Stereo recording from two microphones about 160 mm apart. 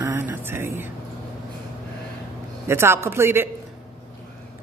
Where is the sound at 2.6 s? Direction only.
15° right (ahead or behind).